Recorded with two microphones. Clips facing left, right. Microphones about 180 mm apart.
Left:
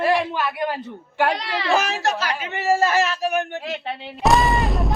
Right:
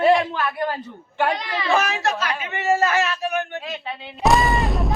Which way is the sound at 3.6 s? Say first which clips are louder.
Left 3 dB; 65° left (ahead or behind).